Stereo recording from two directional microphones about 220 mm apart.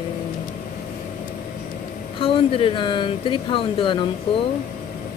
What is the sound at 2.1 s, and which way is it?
Speech, 25° left (ahead or behind).